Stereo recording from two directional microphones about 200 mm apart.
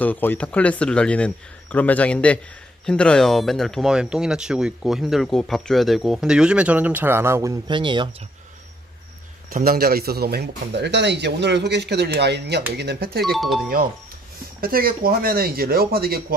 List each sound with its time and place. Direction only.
0.0 s a man's voice: 10° left (ahead or behind); by 8.1 s 25° right (ahead or behind)
9.5 s speech: 50° right (ahead or behind)
13.2 s a man's voice: centre (ahead or behind)
14.6 s speech: 45° right (ahead or behind)